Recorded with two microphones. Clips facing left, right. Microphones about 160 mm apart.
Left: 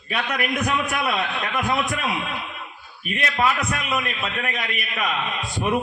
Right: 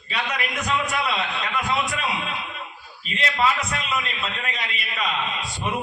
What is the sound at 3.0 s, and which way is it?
A man's voice, 55° left (ahead or behind).